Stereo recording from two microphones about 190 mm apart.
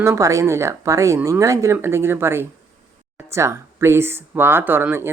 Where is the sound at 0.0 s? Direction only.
15° right (ahead or behind).